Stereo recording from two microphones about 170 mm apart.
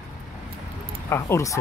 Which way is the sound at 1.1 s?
15° left (ahead or behind).